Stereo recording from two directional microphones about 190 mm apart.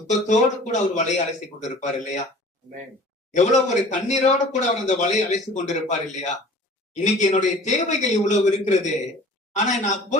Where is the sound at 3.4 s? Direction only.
40° left (ahead or behind).